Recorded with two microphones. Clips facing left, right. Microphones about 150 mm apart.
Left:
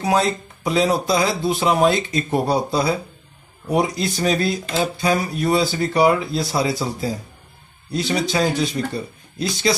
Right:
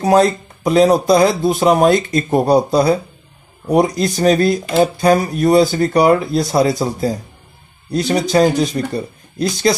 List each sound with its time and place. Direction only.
0.0 s speech: 45° right (ahead or behind)